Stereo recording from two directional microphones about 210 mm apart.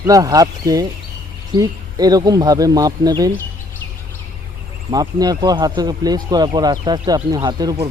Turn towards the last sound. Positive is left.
turn(degrees=-20)  # may be behind; listen again after turning